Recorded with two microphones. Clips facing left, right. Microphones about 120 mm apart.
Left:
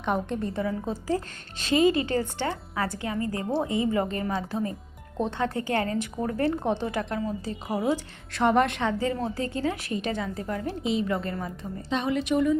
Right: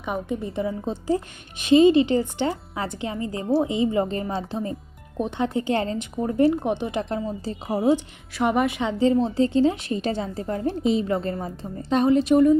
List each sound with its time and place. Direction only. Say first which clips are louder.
0.0 s a woman's voice: even; 5° right (ahead or behind)
0.5 s a woman's voice: right 2 dB; 25° right (ahead or behind)
5.1 s a woman's voice: right 3 dB; 15° right (ahead or behind)
7.0 s a woman's voice: right 2 dB; 30° right (ahead or behind)
8.3 s a woman's voice: even; 10° right (ahead or behind)
8.9 s a woman's voice: right 7 dB; 25° right (ahead or behind)
11.9 s a woman's voice: right 8 dB; 40° right (ahead or behind)